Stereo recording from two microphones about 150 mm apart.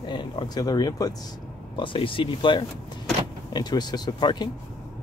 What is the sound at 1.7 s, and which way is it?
Speech, 35° left (ahead or behind).